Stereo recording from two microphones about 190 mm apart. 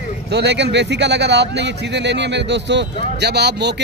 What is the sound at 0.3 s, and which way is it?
Speech, 65° right (ahead or behind).